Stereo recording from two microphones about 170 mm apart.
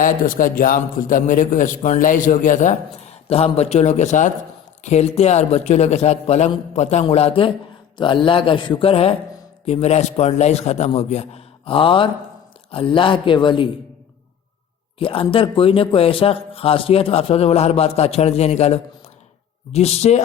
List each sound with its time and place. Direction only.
0.0 s a man's voice: 50° left (ahead or behind)
3.2 s a man's voice: 35° left (ahead or behind)
14.9 s speech: 30° left (ahead or behind)